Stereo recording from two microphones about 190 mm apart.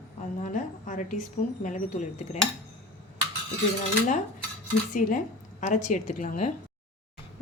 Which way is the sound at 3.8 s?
40° left (ahead or behind).